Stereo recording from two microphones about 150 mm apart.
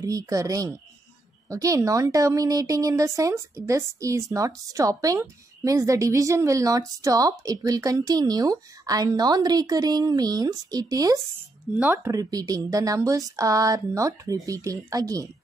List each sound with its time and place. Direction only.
0.0 s speech: 20° right (ahead or behind)